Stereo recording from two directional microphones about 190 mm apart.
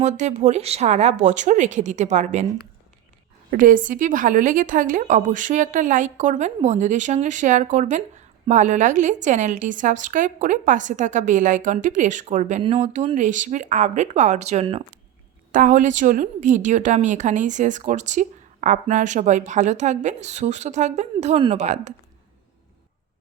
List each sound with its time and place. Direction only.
0.0 s a woman's voice: 35° right (ahead or behind)
3.5 s a woman's voice: 45° right (ahead or behind)
15.5 s a woman's voice: 45° right (ahead or behind)